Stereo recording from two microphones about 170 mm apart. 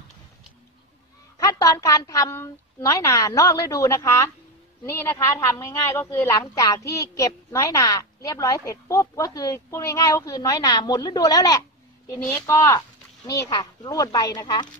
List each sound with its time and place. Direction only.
1.4 s a woman's voice: 20° left (ahead or behind)